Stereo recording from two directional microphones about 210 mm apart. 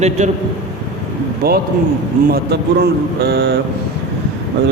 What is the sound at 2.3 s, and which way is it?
Speech, 50° right (ahead or behind).